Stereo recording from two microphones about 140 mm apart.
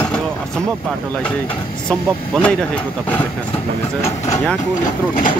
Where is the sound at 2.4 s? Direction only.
10° left (ahead or behind).